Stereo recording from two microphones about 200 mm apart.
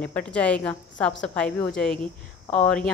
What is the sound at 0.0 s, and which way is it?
A woman's voice, 5° left (ahead or behind).